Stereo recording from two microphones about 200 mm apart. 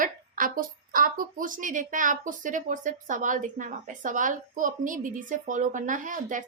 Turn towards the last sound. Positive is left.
turn(degrees=-40)  # may be behind; listen again after turning